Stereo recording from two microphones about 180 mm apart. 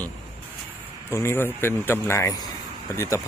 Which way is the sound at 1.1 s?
15° left (ahead or behind).